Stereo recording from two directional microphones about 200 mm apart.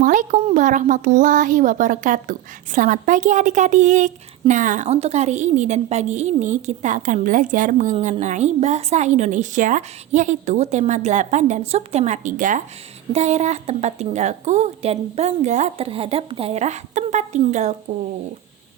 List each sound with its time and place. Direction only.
0.0 s a woman's voice: 40° right (ahead or behind)